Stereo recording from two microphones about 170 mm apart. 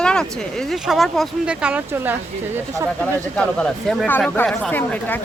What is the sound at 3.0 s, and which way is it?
Speech, 5° left (ahead or behind).